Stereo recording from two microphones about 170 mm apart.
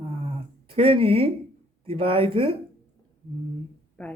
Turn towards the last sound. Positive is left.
turn(degrees=5)  # may be behind; listen again after turning